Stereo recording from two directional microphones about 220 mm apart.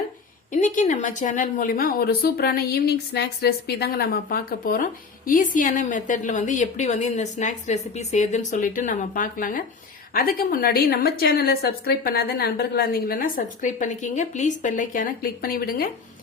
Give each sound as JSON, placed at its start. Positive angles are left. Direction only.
{"t": 0.5, "sound": "a woman's voice", "side_deg": 35}